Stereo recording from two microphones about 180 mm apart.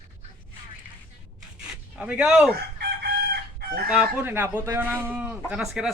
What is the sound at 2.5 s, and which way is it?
Chicken, 60° right (ahead or behind).